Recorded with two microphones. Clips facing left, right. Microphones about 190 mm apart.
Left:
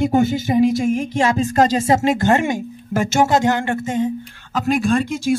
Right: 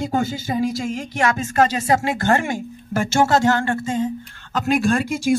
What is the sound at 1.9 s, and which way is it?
Speech, 20° left (ahead or behind).